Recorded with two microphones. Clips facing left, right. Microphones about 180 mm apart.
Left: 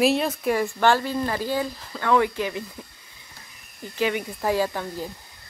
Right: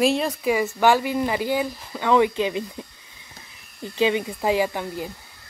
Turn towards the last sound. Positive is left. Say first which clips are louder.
# right 1 dB
turn(degrees=-15)  # may be behind; listen again after turning